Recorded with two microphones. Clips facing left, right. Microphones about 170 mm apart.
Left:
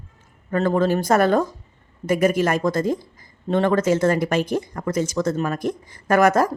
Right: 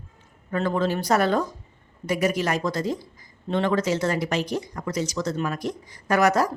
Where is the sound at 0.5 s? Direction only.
45° left (ahead or behind).